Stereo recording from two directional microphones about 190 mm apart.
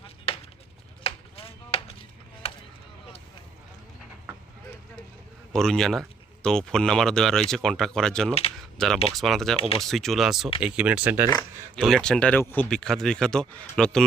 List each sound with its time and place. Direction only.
0.3 s a sound: 30° left (ahead or behind)
1.0 s chopping: 30° left (ahead or behind)
2.4 s a sound: 30° left (ahead or behind)
5.5 s speech: centre (ahead or behind)
9.6 s speech: 30° left (ahead or behind)
9.8 s speech: centre (ahead or behind)
11.8 s speech: centre (ahead or behind)